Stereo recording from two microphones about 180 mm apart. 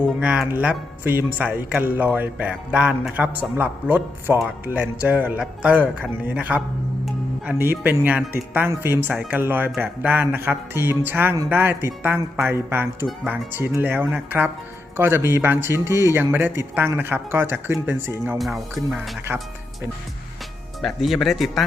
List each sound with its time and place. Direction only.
0.0 s speech: 5° right (ahead or behind)
18.3 s speech: centre (ahead or behind)
19.3 s speech: 10° right (ahead or behind)
20.8 s speech: centre (ahead or behind)